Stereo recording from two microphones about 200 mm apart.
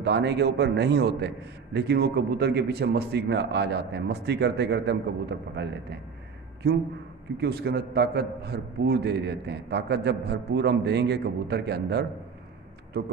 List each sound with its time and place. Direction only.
0.0 s a man's voice: 55° right (ahead or behind)